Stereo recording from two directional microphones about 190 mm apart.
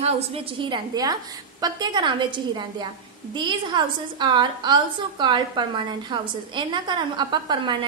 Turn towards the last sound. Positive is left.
turn(degrees=-20)  # may be behind; listen again after turning